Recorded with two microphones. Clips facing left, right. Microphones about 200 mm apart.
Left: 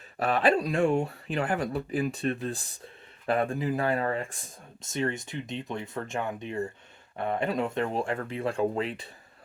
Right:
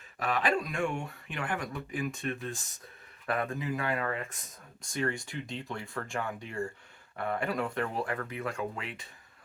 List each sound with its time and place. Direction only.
0.2 s speech: 35° left (ahead or behind)